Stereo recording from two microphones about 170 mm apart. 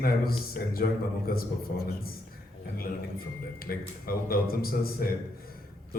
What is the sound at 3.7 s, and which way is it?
A man's voice, 65° left (ahead or behind).